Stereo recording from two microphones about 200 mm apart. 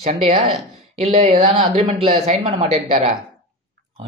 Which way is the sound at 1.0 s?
30° right (ahead or behind).